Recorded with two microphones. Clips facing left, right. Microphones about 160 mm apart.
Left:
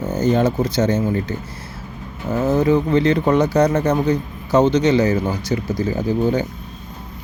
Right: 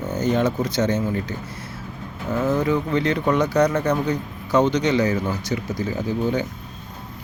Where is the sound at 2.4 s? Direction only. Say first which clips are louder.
Left 5 dB; 30° left (ahead or behind).